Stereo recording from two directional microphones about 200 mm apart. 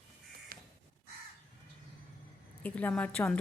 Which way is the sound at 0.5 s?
45° right (ahead or behind).